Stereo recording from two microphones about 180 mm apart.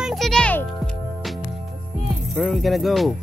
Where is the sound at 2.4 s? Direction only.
Centre (ahead or behind).